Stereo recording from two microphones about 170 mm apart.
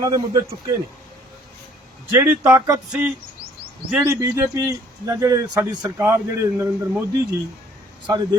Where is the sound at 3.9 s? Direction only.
15° right (ahead or behind).